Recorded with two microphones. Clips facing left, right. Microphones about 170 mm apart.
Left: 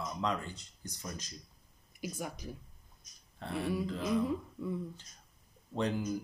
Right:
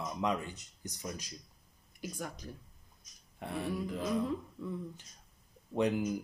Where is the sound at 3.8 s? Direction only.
15° right (ahead or behind).